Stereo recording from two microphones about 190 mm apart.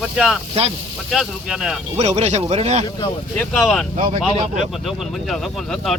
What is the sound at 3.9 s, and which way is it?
Speech, 30° right (ahead or behind).